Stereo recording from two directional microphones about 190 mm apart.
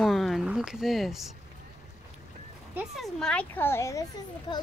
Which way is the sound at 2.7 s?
Centre (ahead or behind).